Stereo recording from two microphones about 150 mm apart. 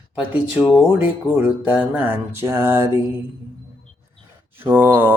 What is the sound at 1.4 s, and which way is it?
Mantra, 10° right (ahead or behind).